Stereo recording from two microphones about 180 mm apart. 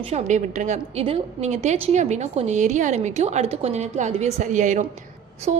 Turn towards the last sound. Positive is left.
turn(degrees=-40)  # may be behind; listen again after turning